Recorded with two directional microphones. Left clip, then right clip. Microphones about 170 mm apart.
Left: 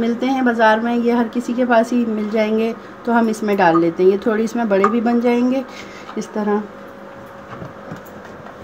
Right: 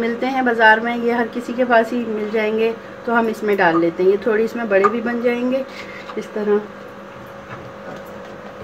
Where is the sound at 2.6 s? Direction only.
70° left (ahead or behind).